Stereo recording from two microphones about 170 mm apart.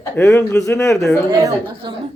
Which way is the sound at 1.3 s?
25° right (ahead or behind).